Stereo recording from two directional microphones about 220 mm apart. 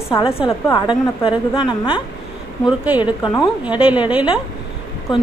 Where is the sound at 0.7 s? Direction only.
20° left (ahead or behind).